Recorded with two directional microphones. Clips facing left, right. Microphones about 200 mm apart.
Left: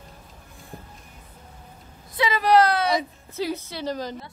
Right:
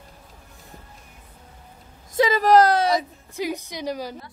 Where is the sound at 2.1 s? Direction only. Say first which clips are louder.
Right 3 dB; 40° right (ahead or behind).